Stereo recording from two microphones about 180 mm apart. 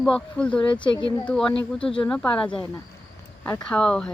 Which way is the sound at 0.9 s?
25° left (ahead or behind).